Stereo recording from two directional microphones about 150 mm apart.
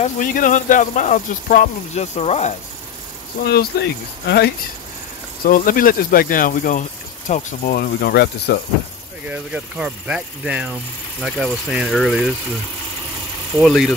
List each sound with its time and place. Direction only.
0.0 s speech: 60° left (ahead or behind)
2.1 s speech: 45° left (ahead or behind)
3.4 s speech: 90° left
5.4 s speech: 70° left (ahead or behind); by 8.5 s 90° left
9.3 s speech: 10° right (ahead or behind)
13.6 s speech: centre (ahead or behind)